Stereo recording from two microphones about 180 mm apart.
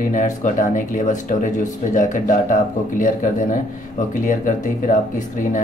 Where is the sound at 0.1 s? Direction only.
45° left (ahead or behind).